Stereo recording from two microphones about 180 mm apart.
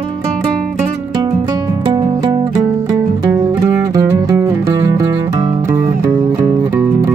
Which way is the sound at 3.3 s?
15° right (ahead or behind).